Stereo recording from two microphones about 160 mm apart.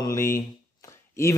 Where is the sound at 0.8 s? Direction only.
20° left (ahead or behind).